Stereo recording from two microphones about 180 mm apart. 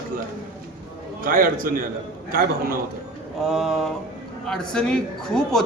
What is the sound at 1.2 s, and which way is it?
A man's voice, 50° right (ahead or behind).